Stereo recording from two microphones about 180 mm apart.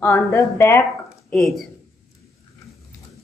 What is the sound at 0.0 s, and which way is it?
Speech, 15° left (ahead or behind).